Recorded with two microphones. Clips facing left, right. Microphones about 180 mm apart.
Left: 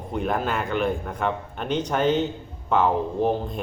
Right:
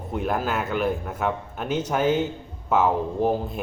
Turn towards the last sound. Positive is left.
turn(degrees=-5)  # may be behind; listen again after turning